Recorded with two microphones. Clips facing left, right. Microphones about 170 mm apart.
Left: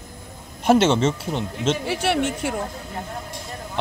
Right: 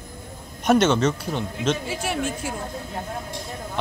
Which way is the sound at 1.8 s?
70° left (ahead or behind).